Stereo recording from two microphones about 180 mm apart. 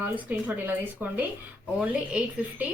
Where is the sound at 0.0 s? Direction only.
10° right (ahead or behind).